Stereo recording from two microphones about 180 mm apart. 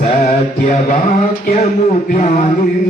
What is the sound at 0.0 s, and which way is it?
Music, 45° left (ahead or behind).